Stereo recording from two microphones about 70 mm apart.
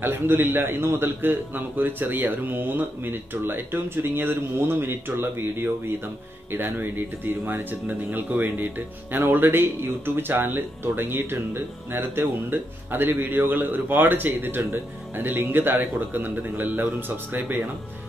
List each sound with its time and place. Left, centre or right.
0.0 s a man's voice: right